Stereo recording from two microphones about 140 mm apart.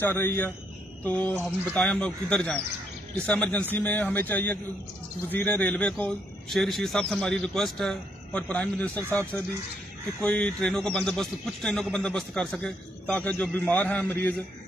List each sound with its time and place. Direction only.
0.0 s a man's voice: 15° left (ahead or behind)